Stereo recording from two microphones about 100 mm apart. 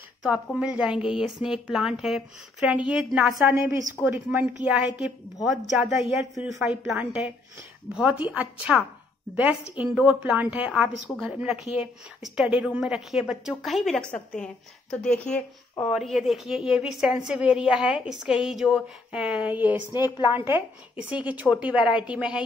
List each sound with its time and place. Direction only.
0.6 s a woman's voice: 10° right (ahead or behind)
4.0 s a woman's voice: 20° right (ahead or behind)
4.6 s a woman's voice: 10° right (ahead or behind)
19.9 s a woman's voice: 45° left (ahead or behind)
20.3 s a woman's voice: 20° right (ahead or behind)